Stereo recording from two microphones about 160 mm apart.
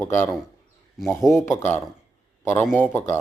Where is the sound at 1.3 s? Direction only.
15° left (ahead or behind).